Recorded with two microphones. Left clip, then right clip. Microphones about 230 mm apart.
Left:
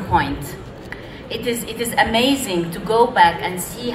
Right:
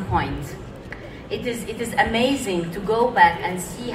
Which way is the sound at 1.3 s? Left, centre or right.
Left.